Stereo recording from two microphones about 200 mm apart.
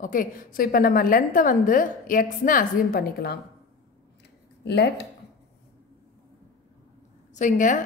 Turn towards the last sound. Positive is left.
turn(degrees=40)  # may be behind; listen again after turning